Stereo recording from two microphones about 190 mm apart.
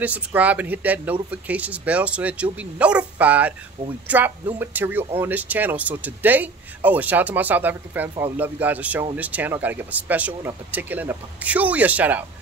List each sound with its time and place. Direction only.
0.0 s speech: 10° right (ahead or behind)
3.8 s speech: 30° right (ahead or behind)
4.1 s speech: 10° right (ahead or behind)